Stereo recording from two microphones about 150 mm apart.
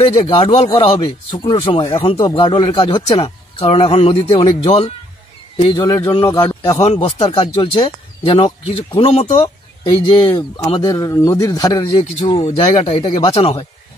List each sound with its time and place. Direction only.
0.0 s speech: 40° left (ahead or behind)
6.2 s speech: 20° left (ahead or behind)
6.8 s speech: 45° left (ahead or behind)
10.0 s speech: 35° left (ahead or behind)
10.9 s speech: 20° left (ahead or behind)
12.3 s speech: 35° left (ahead or behind)